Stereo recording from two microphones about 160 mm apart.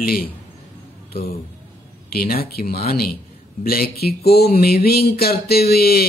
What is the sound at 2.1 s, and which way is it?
Speech, 70° left (ahead or behind).